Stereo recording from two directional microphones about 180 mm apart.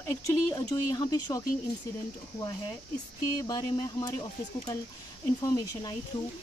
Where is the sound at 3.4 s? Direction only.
20° left (ahead or behind).